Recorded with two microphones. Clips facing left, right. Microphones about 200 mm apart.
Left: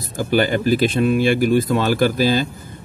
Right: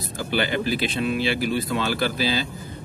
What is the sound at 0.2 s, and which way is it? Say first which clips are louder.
Speech: left 7 dB; 45° left (ahead or behind).